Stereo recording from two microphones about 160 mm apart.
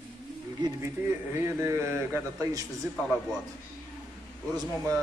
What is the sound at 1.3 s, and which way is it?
A man's voice, 15° right (ahead or behind).